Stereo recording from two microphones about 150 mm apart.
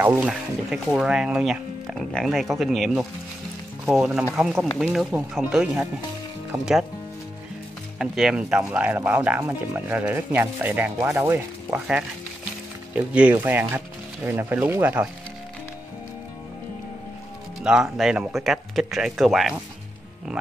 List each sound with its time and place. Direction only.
0.0 s speech: 15° right (ahead or behind)
8.0 s speech: 5° right (ahead or behind)
17.6 s speech: 5° right (ahead or behind)